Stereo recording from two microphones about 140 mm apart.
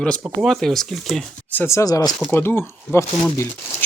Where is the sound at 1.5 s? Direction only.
15° left (ahead or behind).